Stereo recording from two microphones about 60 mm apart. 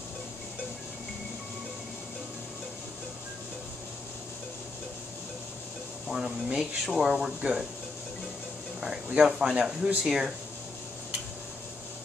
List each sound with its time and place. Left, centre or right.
6.0 s speech: centre
8.8 s speech: centre